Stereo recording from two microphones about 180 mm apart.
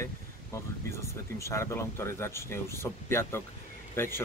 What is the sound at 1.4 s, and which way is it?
A man's voice, 15° left (ahead or behind).